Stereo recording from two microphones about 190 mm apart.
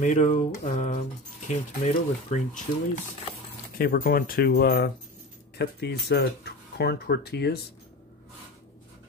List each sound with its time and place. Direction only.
0.0 s speech: 40° left (ahead or behind)
3.7 s speech: 50° left (ahead or behind)